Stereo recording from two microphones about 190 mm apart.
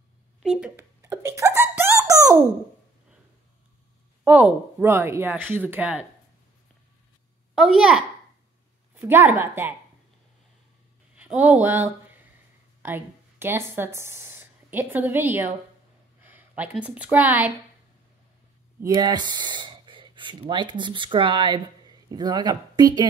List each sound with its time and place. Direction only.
0.4 s a sound: 5° right (ahead or behind)
4.7 s speech: 10° right (ahead or behind)
7.5 s a child's voice: centre (ahead or behind)
11.1 s speech: 10° right (ahead or behind)
18.9 s speech: 20° right (ahead or behind)